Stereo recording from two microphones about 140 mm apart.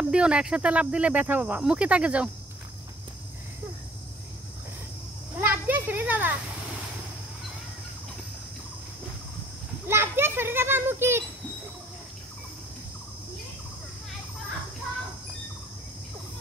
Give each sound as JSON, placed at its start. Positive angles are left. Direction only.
{"t": 0.1, "sound": "speech", "side_deg": -5}
{"t": 5.4, "sound": "a child's voice", "side_deg": -15}
{"t": 9.8, "sound": "speech", "side_deg": -15}